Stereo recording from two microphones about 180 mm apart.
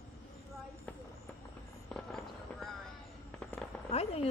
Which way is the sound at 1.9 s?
Centre (ahead or behind).